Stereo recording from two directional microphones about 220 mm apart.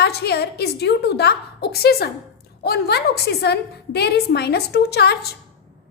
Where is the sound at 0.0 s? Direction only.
45° left (ahead or behind).